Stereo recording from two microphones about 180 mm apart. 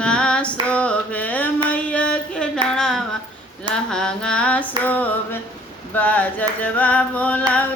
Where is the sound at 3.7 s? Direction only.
5° left (ahead or behind).